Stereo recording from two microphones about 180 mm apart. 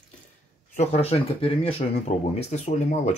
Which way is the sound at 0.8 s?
35° left (ahead or behind).